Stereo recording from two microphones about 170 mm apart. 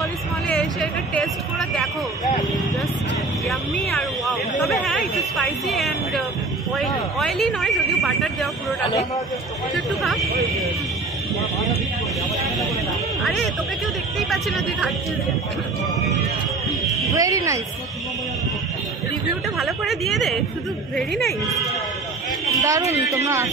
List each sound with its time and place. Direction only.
0.5 s speech: 5° left (ahead or behind)
3.4 s speech: centre (ahead or behind)
13.2 s speech: centre (ahead or behind)
17.1 s speech: 20° right (ahead or behind)
19.6 s speech: centre (ahead or behind)
22.6 s a woman's voice: 20° right (ahead or behind)